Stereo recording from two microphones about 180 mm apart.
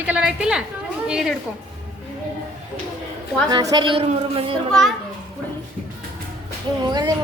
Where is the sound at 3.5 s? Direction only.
25° right (ahead or behind).